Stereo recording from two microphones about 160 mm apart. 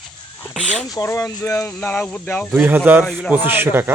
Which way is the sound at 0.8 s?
20° left (ahead or behind).